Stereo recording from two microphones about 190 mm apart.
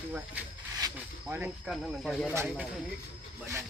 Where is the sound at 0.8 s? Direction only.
20° right (ahead or behind).